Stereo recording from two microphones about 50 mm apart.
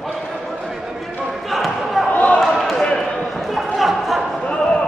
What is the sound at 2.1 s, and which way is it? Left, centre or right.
Basketball bounce, left.